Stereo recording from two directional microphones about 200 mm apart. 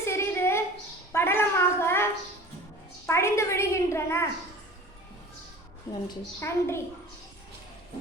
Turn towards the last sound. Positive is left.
turn(degrees=15)  # may be behind; listen again after turning